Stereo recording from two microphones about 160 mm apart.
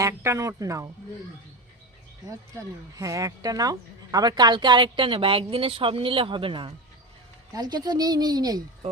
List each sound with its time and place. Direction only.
0.0 s speech: 15° right (ahead or behind)
2.2 s speech: 20° right (ahead or behind)